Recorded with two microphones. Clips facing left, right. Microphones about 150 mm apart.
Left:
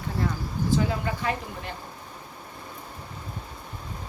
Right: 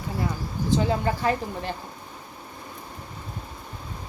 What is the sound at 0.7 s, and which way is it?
Speech, 35° right (ahead or behind).